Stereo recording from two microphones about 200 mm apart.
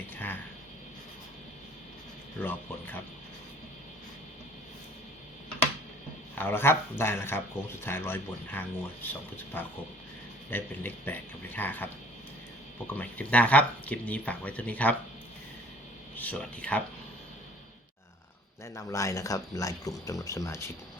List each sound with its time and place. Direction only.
2.4 s speech: 10° left (ahead or behind)
6.3 s speech: 10° left (ahead or behind)
12.9 s speech: 10° left (ahead or behind)
16.1 s speech: 10° left (ahead or behind)
18.6 s speech: 15° left (ahead or behind)